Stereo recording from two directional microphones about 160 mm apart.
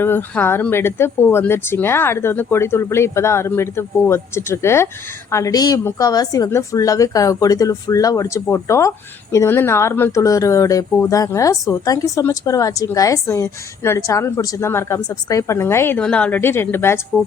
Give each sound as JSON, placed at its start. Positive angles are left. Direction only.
{"t": 0.0, "sound": "a woman's voice", "side_deg": 15}